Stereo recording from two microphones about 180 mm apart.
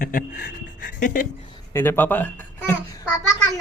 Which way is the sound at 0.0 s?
50° left (ahead or behind).